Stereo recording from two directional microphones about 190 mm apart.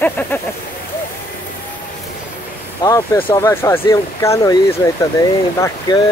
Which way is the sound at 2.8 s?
20° left (ahead or behind).